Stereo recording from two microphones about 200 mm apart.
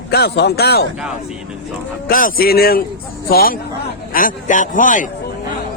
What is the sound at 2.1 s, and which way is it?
A man's voice, 45° left (ahead or behind).